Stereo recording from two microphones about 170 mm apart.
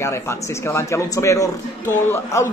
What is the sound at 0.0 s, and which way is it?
A man's voice, 15° left (ahead or behind).